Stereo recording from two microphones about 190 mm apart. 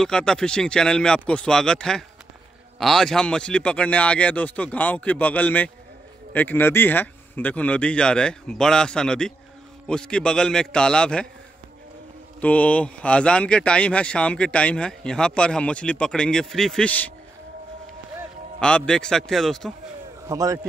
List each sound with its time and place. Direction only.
0.0 s speech: 5° left (ahead or behind)
12.4 s speech: 10° left (ahead or behind)
18.6 s speech: 5° left (ahead or behind)
20.2 s a man's voice: 15° right (ahead or behind)